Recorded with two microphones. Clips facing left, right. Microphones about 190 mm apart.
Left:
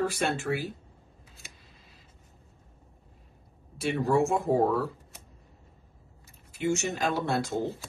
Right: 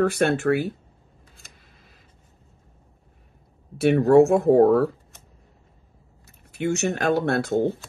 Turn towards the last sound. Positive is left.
turn(degrees=-60)  # may be behind; listen again after turning